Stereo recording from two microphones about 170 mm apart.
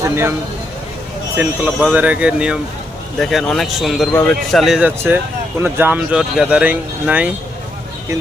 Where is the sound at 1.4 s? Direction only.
10° right (ahead or behind).